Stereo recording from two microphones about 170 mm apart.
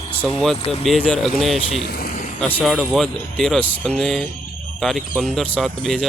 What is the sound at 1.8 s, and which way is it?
Vehicle, 65° left (ahead or behind).